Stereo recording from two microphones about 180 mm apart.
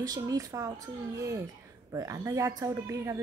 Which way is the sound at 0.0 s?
20° right (ahead or behind).